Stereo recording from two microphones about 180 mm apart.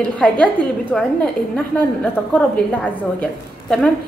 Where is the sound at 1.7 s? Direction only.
10° left (ahead or behind).